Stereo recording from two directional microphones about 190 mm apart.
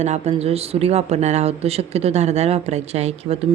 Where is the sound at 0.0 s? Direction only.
35° right (ahead or behind).